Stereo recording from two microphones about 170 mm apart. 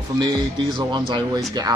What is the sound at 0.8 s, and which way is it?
Speech, 25° right (ahead or behind).